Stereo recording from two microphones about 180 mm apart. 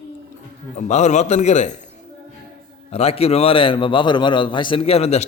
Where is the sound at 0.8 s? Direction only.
40° left (ahead or behind).